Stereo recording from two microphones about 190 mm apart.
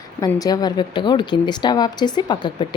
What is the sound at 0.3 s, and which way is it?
A woman's voice, 20° left (ahead or behind).